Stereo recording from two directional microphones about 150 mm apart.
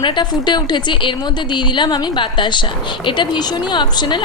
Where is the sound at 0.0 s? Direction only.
30° left (ahead or behind).